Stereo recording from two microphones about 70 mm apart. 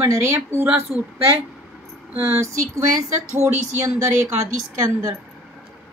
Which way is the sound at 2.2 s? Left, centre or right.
Right.